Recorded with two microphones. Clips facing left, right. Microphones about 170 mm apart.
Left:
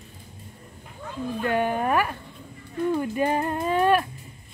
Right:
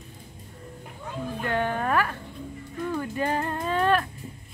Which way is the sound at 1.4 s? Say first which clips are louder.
Left 3 dB; 15° left (ahead or behind).